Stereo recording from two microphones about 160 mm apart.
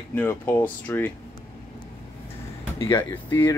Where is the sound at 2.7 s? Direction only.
20° left (ahead or behind).